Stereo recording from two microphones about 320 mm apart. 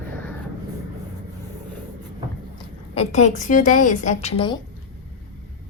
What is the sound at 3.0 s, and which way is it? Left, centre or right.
A woman's voice, left.